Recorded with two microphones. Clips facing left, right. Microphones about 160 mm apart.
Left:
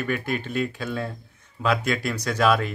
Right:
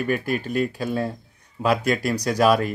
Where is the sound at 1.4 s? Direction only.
35° right (ahead or behind).